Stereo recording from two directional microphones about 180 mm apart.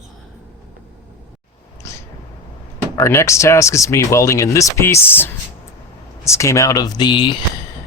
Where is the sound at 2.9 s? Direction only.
15° left (ahead or behind).